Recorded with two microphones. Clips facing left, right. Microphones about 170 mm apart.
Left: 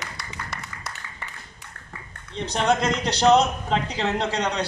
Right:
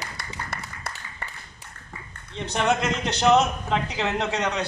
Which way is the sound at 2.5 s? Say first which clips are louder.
Left 1 dB; 35° left (ahead or behind).